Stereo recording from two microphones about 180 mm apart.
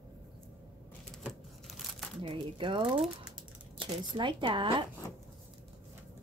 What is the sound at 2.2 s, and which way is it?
Speech, 30° right (ahead or behind).